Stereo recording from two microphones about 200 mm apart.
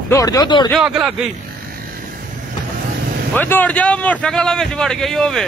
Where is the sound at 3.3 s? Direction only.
10° left (ahead or behind).